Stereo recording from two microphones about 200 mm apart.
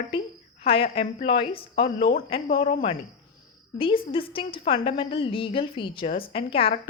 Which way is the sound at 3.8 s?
25° left (ahead or behind).